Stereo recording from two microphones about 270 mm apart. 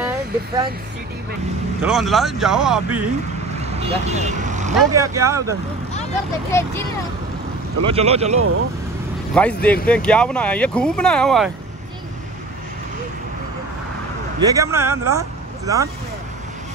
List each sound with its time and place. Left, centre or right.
1.8 s speech: centre
3.5 s vehicle: right
4.9 s speech: centre
6.5 s speech: centre
7.8 s speech: right
8.4 s speech: right
9.3 s speech: centre
14.4 s speech: centre